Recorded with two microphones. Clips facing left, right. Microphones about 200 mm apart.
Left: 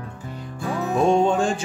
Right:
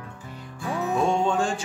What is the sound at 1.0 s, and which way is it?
Music, 20° left (ahead or behind).